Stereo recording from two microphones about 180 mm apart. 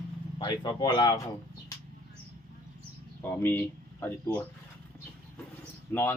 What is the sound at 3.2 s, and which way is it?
Speech, 10° left (ahead or behind).